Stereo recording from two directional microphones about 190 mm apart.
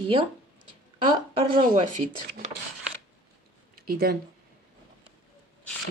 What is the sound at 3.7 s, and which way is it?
Speech, 50° right (ahead or behind).